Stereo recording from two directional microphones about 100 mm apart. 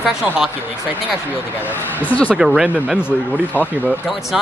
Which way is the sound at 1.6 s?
20° left (ahead or behind).